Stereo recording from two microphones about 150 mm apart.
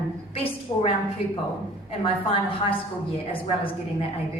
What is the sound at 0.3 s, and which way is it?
A woman's voice, 40° left (ahead or behind).